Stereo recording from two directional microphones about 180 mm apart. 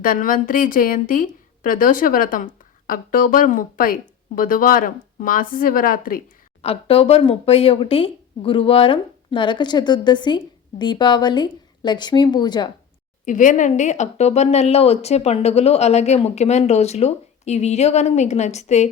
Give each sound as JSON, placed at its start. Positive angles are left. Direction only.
{"t": 0.0, "sound": "a woman's voice", "side_deg": 50}
{"t": 6.6, "sound": "speech", "side_deg": 35}
{"t": 13.2, "sound": "speech", "side_deg": 45}